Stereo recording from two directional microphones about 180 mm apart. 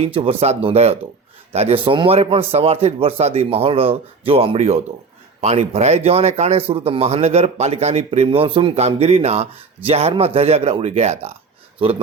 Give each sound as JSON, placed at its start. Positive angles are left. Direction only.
{"t": 0.0, "sound": "speech", "side_deg": -30}